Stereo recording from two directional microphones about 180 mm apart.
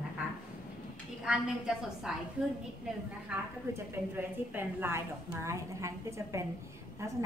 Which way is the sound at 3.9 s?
10° right (ahead or behind).